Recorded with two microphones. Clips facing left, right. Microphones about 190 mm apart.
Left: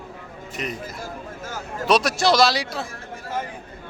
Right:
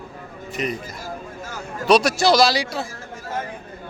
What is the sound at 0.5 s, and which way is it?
A man's voice, centre (ahead or behind).